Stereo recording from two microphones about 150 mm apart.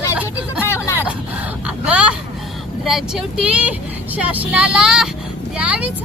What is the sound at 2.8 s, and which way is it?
Vehicle, 5° right (ahead or behind).